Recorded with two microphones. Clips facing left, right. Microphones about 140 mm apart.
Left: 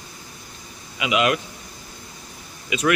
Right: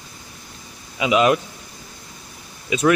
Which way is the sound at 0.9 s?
35° right (ahead or behind).